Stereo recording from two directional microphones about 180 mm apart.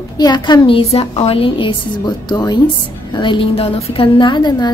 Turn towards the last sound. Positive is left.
turn(degrees=25)  # may be behind; listen again after turning